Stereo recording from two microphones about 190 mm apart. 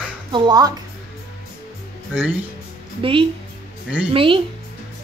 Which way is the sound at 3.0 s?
25° right (ahead or behind).